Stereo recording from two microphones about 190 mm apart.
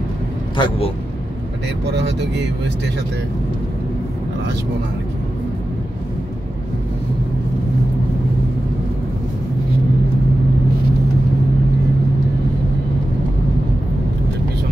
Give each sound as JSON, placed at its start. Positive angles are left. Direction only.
{"t": 0.6, "sound": "a man's voice", "side_deg": 30}
{"t": 2.0, "sound": "speech", "side_deg": -65}